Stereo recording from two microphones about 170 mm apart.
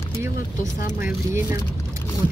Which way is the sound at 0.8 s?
50° left (ahead or behind).